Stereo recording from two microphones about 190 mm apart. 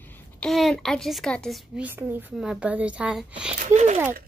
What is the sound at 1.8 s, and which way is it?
A woman's voice, 10° right (ahead or behind).